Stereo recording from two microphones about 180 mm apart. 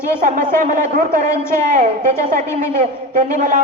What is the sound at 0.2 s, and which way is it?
A man's voice, 50° right (ahead or behind).